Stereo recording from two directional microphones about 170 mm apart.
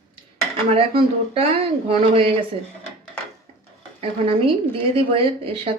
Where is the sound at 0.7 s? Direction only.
35° right (ahead or behind).